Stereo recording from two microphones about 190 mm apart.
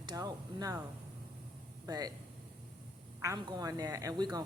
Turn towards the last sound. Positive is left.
turn(degrees=-20)  # may be behind; listen again after turning